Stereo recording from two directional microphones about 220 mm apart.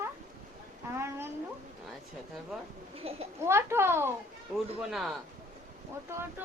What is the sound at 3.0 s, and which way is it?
Speech, 25° right (ahead or behind).